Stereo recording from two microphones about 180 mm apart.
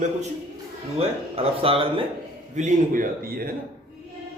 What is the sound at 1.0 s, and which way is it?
Speech, 35° right (ahead or behind).